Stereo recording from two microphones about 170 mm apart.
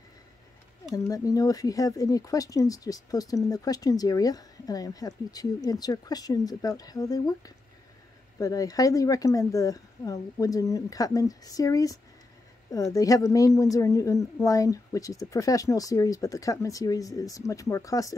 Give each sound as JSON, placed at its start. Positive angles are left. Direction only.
{"t": 0.9, "sound": "speech", "side_deg": 20}